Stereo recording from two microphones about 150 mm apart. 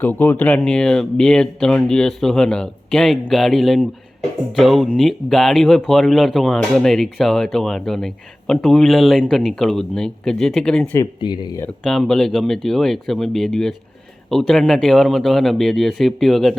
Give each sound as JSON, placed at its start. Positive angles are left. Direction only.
{"t": 0.0, "sound": "speech", "side_deg": 10}
{"t": 11.2, "sound": "speech", "side_deg": 30}
{"t": 11.8, "sound": "speech", "side_deg": 0}